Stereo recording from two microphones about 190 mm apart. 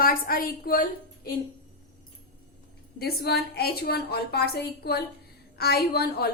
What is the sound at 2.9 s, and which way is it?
A woman's voice, 55° left (ahead or behind).